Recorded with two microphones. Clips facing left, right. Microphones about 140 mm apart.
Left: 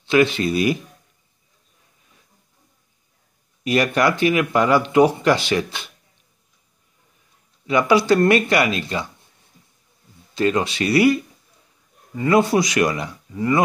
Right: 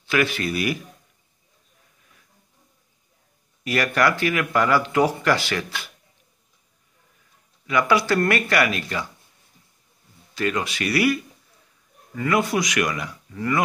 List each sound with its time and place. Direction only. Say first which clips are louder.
0.0 s speech: left 6 dB; 25° left (ahead or behind)
3.6 s speech: left 3 dB; 20° left (ahead or behind)
7.6 s speech: left 4 dB; 25° left (ahead or behind)
10.3 s speech: left 5 dB; 25° left (ahead or behind)
12.2 s speech: left 5 dB; 30° left (ahead or behind)